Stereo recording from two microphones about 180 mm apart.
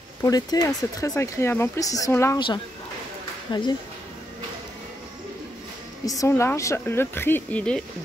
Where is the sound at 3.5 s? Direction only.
25° left (ahead or behind).